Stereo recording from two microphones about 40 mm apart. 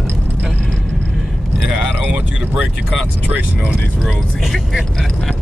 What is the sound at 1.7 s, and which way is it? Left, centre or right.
Vehicle, right.